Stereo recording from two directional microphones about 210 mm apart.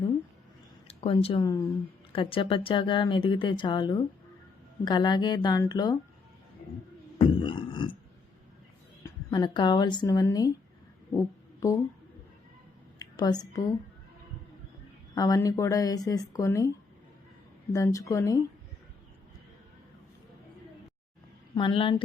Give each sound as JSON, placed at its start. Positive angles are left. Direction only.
{"t": 0.9, "sound": "speech", "side_deg": 25}
{"t": 7.2, "sound": "a sound", "side_deg": 25}
{"t": 9.0, "sound": "speech", "side_deg": 20}
{"t": 11.6, "sound": "speech", "side_deg": 15}
{"t": 13.0, "sound": "a woman's voice", "side_deg": 20}
{"t": 15.1, "sound": "speech", "side_deg": 15}
{"t": 21.5, "sound": "speech", "side_deg": 25}